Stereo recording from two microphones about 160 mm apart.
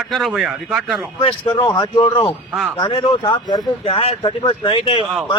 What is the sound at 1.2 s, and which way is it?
Speech, 35° left (ahead or behind).